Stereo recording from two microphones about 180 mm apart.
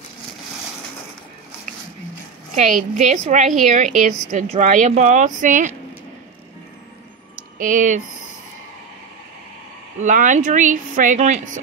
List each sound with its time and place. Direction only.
2.5 s speech: 45° right (ahead or behind)
7.5 s speech: 45° right (ahead or behind)
9.9 s speech: 45° right (ahead or behind)